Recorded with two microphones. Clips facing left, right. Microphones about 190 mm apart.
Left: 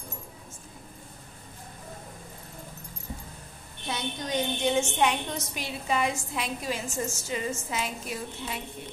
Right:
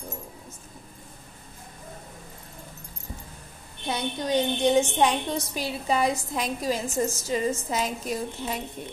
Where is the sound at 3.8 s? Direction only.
35° right (ahead or behind).